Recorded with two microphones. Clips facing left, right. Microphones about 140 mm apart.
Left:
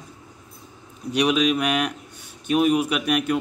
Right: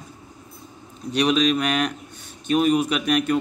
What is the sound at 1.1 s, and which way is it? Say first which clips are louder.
Speech: right 1 dB; 10° left (ahead or behind).